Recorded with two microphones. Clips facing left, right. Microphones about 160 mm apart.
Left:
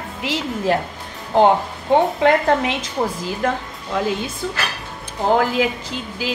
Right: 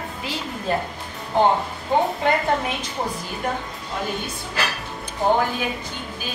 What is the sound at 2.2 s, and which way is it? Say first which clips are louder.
A woman's voice: left 5 dB; 90° left.